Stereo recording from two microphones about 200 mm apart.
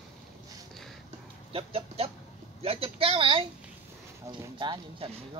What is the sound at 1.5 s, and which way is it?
Speech, 30° right (ahead or behind).